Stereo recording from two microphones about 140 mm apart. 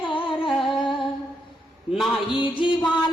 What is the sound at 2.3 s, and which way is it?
Music, 35° left (ahead or behind).